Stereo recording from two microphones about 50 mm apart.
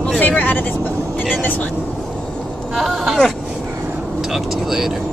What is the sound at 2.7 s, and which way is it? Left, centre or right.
Speech, centre.